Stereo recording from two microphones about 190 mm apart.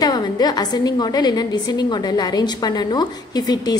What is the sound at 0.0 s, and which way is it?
A woman's voice, 20° left (ahead or behind).